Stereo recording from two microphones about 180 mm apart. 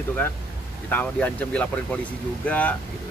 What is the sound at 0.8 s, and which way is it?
Speech, 10° left (ahead or behind).